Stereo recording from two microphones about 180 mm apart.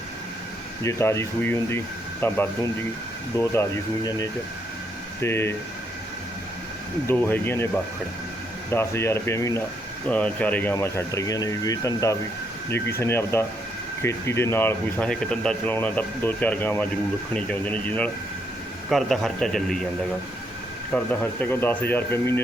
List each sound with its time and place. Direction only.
0.9 s speech: 15° left (ahead or behind)
7.1 s speech: 10° left (ahead or behind)
8.7 s a man's voice: 15° left (ahead or behind)
20.9 s speech: 10° left (ahead or behind)